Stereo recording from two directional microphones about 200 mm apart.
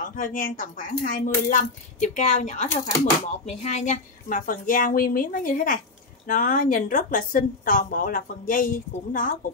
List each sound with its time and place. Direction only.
0.0 s a woman's voice: 40° left (ahead or behind)